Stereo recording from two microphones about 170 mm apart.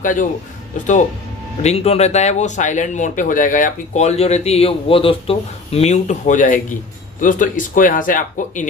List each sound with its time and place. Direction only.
0.0 s speech: 50° left (ahead or behind)
1.6 s speech: 40° left (ahead or behind)